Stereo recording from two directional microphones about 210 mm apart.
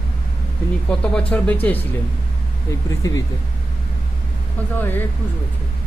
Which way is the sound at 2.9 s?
15° left (ahead or behind).